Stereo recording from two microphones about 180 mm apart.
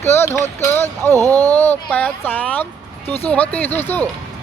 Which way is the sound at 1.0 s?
15° right (ahead or behind).